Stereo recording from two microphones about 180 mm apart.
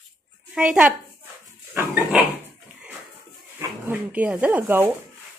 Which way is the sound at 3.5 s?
10° right (ahead or behind).